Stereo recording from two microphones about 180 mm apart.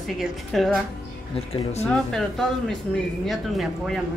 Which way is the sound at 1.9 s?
5° left (ahead or behind).